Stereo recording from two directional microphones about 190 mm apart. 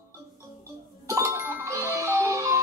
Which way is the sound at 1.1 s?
15° right (ahead or behind).